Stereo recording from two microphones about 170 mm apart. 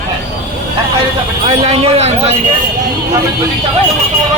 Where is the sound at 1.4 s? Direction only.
35° right (ahead or behind).